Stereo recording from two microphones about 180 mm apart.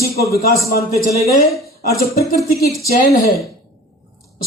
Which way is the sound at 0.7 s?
60° left (ahead or behind).